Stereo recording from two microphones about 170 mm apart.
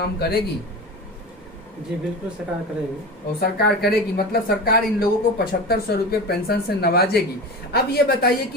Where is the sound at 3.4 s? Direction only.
70° left (ahead or behind).